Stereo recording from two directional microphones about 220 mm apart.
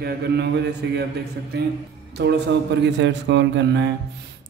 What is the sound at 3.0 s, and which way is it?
Mantra, 55° right (ahead or behind).